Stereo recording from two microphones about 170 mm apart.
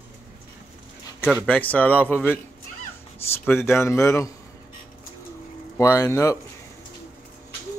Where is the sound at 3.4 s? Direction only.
15° left (ahead or behind).